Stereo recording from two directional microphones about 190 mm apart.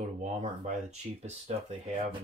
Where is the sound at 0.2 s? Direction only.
35° right (ahead or behind).